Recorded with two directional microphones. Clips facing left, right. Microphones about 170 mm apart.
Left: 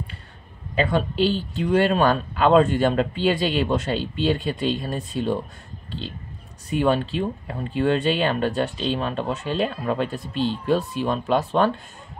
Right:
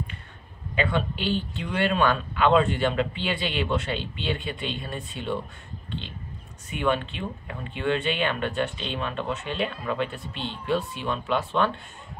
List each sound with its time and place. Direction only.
0.7 s speech: 40° left (ahead or behind)
5.9 s a sound: 35° left (ahead or behind)
6.7 s speech: 35° left (ahead or behind)